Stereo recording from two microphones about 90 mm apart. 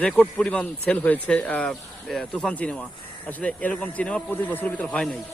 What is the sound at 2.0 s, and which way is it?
Speech, centre (ahead or behind).